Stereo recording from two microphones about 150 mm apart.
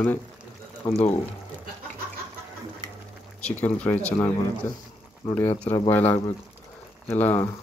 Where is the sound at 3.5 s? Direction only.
10° left (ahead or behind).